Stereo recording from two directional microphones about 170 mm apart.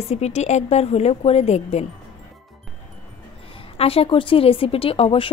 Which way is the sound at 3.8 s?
35° left (ahead or behind).